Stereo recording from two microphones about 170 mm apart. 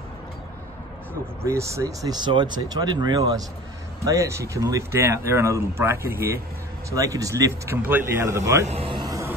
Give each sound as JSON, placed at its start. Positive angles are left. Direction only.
{"t": 1.4, "sound": "speech", "side_deg": -15}
{"t": 8.6, "sound": "speech", "side_deg": -35}
{"t": 9.0, "sound": "music", "side_deg": -20}